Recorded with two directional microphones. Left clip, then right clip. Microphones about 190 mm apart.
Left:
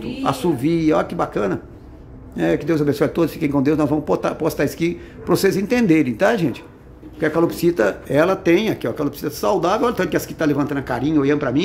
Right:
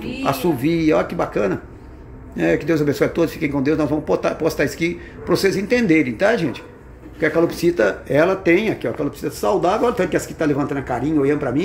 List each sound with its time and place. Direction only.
0.2 s speech: centre (ahead or behind)